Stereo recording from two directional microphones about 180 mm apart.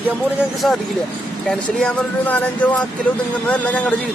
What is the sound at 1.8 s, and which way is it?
Speech, 10° left (ahead or behind).